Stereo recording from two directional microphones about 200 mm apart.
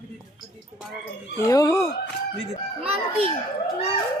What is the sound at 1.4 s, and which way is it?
Speech, 15° left (ahead or behind).